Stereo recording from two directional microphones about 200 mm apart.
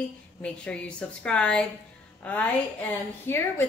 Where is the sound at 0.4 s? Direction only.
5° left (ahead or behind).